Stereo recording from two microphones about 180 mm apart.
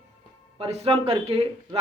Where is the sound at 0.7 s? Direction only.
30° right (ahead or behind).